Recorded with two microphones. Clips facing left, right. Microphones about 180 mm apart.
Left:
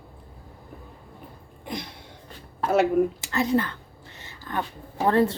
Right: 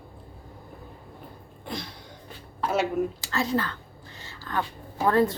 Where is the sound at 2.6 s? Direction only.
55° left (ahead or behind).